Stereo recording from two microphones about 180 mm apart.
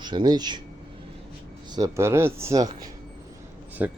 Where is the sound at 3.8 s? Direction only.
10° right (ahead or behind).